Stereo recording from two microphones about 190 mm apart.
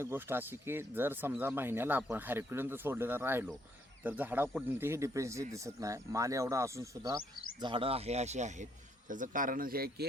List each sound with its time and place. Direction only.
0.0 s speech: 10° right (ahead or behind)
7.6 s a man's voice: 25° right (ahead or behind); by 10.1 s 50° right (ahead or behind)